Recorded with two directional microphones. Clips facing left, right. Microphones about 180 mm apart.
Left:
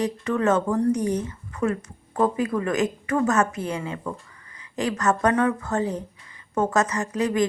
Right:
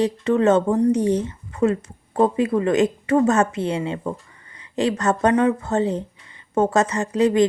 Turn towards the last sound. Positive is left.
turn(degrees=-30)  # may be behind; listen again after turning